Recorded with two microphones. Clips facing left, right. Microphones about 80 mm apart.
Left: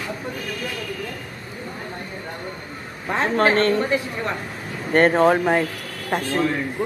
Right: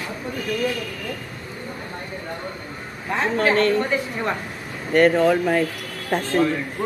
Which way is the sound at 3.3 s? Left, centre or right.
Left.